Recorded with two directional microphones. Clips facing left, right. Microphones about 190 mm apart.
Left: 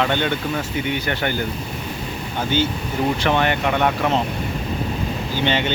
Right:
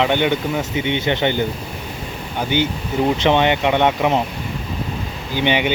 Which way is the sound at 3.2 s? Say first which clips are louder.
Right 4 dB; 20° right (ahead or behind).